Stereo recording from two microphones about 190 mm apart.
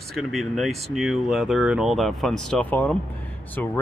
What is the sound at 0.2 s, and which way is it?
Speech, centre (ahead or behind).